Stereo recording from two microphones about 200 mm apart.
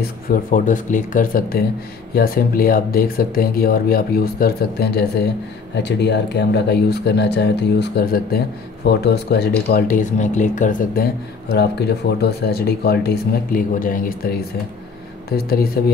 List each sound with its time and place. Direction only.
0.0 s speech: 45° left (ahead or behind)
15.3 s speech: 50° left (ahead or behind)